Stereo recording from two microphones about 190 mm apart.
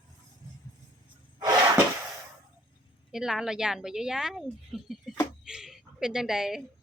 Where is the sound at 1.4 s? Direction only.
20° right (ahead or behind).